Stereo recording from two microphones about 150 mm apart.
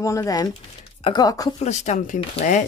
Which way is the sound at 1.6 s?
50° left (ahead or behind).